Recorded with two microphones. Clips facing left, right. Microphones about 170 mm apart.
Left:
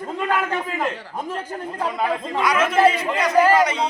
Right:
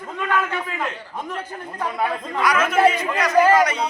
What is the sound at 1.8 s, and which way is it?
Speech, 20° left (ahead or behind).